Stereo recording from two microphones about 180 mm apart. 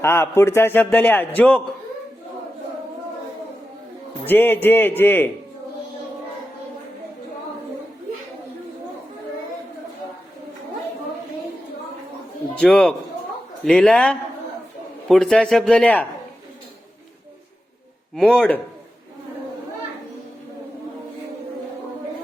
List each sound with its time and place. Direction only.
0.0 s a man's voice: 15° left (ahead or behind)
4.3 s a man's voice: 10° left (ahead or behind)
12.5 s a man's voice: 5° left (ahead or behind)
18.1 s a man's voice: 5° left (ahead or behind)